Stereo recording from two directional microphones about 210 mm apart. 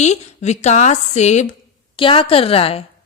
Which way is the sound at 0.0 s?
30° left (ahead or behind).